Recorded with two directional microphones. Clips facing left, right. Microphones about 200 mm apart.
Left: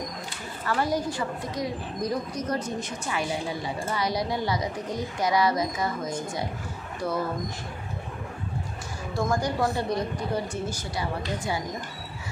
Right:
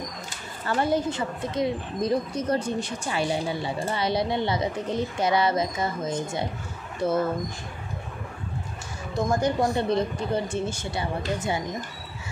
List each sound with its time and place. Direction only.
0.7 s speech: 25° right (ahead or behind)
9.1 s speech: 20° right (ahead or behind)